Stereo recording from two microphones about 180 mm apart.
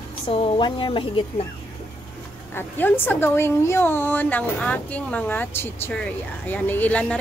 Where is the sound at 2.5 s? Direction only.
10° left (ahead or behind).